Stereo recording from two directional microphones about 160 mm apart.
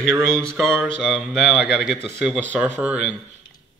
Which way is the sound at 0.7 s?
10° right (ahead or behind).